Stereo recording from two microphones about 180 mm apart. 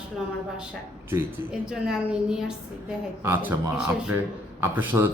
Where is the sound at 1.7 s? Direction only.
5° right (ahead or behind).